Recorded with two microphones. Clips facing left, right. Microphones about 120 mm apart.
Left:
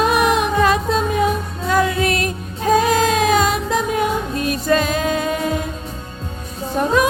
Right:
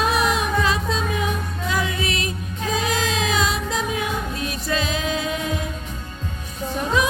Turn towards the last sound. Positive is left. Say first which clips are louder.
# left 5 dB
turn(degrees=50)  # may be behind; listen again after turning